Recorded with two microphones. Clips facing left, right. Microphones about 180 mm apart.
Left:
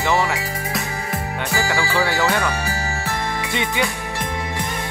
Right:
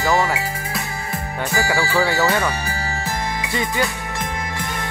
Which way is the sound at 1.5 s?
Centre (ahead or behind).